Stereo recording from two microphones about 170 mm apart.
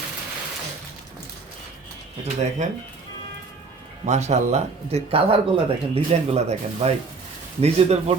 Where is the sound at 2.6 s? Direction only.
45° right (ahead or behind).